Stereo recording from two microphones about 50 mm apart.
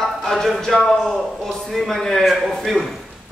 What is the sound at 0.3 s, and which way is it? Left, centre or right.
Speech, centre.